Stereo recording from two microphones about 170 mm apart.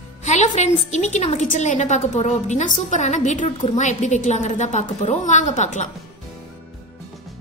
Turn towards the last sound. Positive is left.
turn(degrees=45)  # may be behind; listen again after turning